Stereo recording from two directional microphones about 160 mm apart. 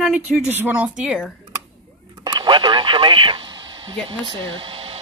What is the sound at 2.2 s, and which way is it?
Speech, 30° right (ahead or behind).